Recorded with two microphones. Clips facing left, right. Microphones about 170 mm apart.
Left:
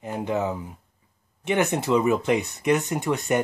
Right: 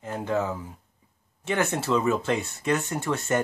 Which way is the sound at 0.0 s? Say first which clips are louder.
Left 1 dB; 15° left (ahead or behind).